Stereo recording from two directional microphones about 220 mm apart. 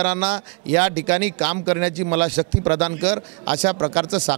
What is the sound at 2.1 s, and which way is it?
A man's voice, 25° right (ahead or behind).